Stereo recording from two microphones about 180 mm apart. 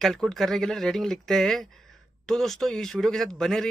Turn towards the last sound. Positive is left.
turn(degrees=0)  # may be behind; listen again after turning